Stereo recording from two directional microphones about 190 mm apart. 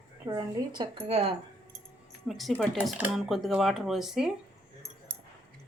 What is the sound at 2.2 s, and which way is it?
Speech, centre (ahead or behind).